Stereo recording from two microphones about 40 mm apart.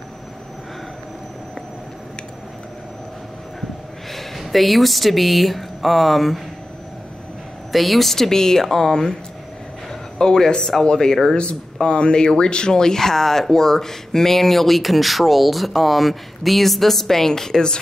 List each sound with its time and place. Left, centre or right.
4.1 s speech: centre
7.7 s speech: centre
10.1 s speech: centre
11.3 s speech: left